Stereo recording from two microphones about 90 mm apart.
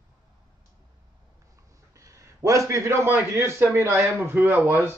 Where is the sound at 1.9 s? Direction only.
35° right (ahead or behind); by 4.9 s 20° right (ahead or behind).